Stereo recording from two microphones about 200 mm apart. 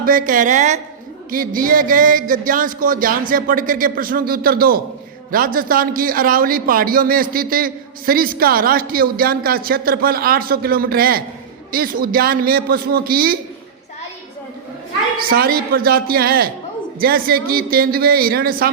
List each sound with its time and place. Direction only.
0.0 s a woman's voice: 45° right (ahead or behind)
15.2 s a man's voice: 50° right (ahead or behind)